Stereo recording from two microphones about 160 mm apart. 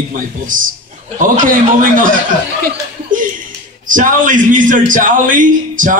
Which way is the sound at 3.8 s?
55° right (ahead or behind).